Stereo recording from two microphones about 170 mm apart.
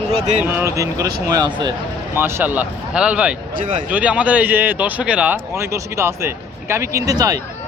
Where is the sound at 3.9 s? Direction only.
10° right (ahead or behind).